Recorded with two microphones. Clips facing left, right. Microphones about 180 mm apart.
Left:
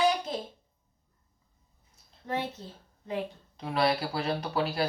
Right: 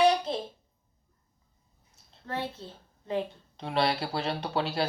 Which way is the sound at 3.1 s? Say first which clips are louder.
Right 2 dB; 30° right (ahead or behind).